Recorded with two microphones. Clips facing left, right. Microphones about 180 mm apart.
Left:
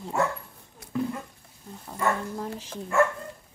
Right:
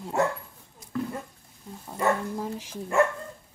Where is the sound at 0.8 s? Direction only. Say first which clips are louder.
Left 3 dB; 65° left (ahead or behind).